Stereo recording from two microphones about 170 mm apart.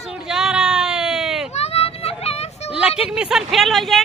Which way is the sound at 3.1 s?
5° right (ahead or behind).